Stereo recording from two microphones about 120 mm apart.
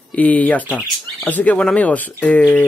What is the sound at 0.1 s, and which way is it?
Speech, 10° left (ahead or behind).